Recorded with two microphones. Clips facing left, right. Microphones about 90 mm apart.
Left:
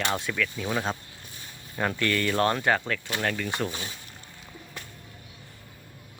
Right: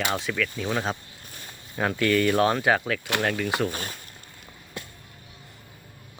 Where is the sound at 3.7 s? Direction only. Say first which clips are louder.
Right 3 dB; 50° right (ahead or behind).